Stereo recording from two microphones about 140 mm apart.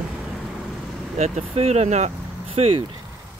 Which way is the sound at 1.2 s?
50° right (ahead or behind).